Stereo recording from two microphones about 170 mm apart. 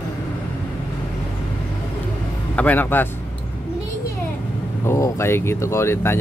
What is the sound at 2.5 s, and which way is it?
Speech, 10° left (ahead or behind).